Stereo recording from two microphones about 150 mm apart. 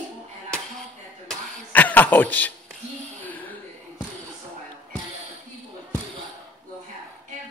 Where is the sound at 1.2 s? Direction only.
10° left (ahead or behind).